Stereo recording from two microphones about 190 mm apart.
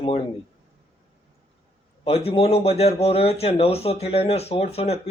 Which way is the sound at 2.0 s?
30° left (ahead or behind).